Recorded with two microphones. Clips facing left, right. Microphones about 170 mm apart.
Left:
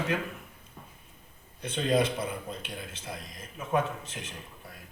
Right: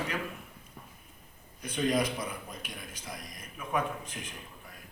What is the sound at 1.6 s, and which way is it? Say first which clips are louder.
A man's voice: left 2 dB; 30° left (ahead or behind).